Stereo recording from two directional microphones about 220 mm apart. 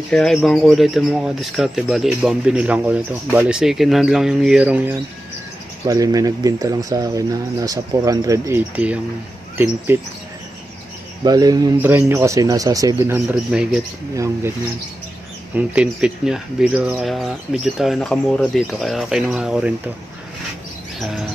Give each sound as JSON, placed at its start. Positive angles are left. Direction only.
{"t": 0.1, "sound": "speech", "side_deg": 0}
{"t": 11.2, "sound": "speech", "side_deg": -15}
{"t": 14.1, "sound": "speech", "side_deg": -15}
{"t": 15.5, "sound": "speech", "side_deg": -5}
{"t": 21.0, "sound": "bird", "side_deg": 0}